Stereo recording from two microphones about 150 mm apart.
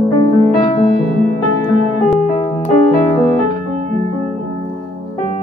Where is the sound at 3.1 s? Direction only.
15° left (ahead or behind).